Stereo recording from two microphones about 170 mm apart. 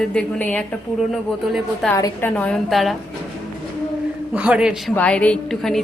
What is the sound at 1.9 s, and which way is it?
A woman's voice, 15° left (ahead or behind).